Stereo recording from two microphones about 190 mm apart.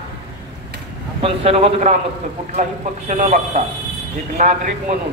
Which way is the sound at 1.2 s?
30° right (ahead or behind).